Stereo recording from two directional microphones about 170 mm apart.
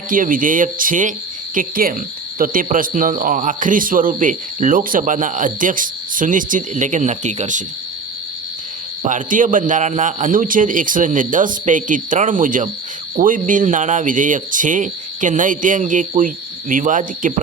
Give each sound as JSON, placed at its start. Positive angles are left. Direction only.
{"t": 0.1, "sound": "a man's voice", "side_deg": -55}
{"t": 9.0, "sound": "a man's voice", "side_deg": -50}